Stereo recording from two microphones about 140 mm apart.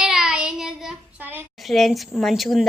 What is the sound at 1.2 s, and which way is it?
Speech, 10° right (ahead or behind).